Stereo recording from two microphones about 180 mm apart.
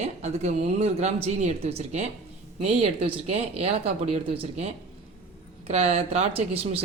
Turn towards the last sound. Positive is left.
turn(degrees=-35)  # may be behind; listen again after turning